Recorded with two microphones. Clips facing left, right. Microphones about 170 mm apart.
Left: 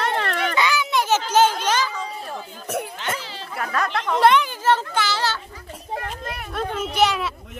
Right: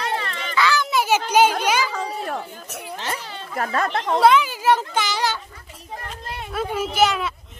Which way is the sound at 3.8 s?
30° right (ahead or behind).